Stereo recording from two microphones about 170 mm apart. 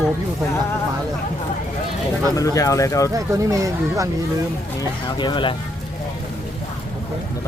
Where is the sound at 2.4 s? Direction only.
20° left (ahead or behind).